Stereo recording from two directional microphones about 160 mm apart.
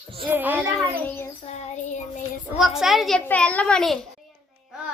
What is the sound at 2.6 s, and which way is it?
A woman's voice, centre (ahead or behind).